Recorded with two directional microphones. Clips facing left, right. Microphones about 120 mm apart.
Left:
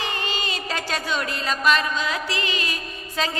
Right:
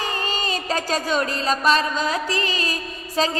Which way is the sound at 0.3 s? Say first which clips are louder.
Right 4 dB; 40° right (ahead or behind).